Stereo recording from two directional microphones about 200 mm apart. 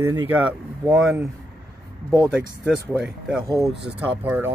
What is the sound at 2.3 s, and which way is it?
Speech, 5° right (ahead or behind).